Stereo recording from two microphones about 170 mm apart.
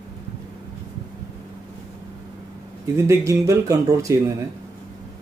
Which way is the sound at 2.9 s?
15° right (ahead or behind).